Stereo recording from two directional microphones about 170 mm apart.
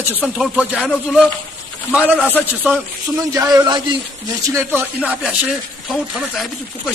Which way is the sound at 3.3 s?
20° right (ahead or behind).